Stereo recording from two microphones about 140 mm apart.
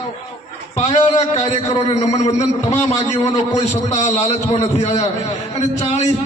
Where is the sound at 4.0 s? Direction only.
55° left (ahead or behind).